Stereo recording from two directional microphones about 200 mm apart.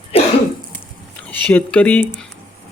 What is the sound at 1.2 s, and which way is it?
Speech, 10° left (ahead or behind).